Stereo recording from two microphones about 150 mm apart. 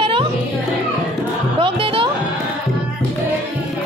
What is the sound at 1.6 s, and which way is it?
Music, 35° right (ahead or behind).